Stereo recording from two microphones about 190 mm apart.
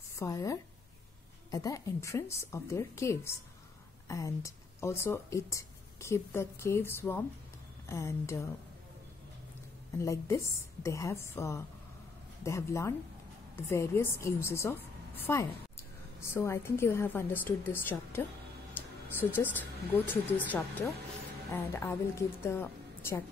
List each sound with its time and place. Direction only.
0.1 s a woman's voice: 15° left (ahead or behind)
9.9 s speech: 15° left (ahead or behind)
18.8 s a sound: 10° left (ahead or behind)
19.1 s speech: 10° left (ahead or behind)